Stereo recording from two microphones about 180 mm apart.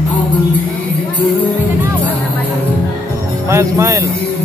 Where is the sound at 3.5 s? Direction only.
15° right (ahead or behind).